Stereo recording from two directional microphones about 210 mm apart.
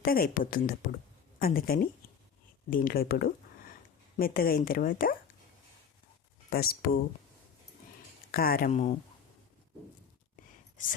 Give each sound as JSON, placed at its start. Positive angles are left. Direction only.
{"t": 0.0, "sound": "speech", "side_deg": 45}
{"t": 6.5, "sound": "speech", "side_deg": 45}
{"t": 8.3, "sound": "speech", "side_deg": 45}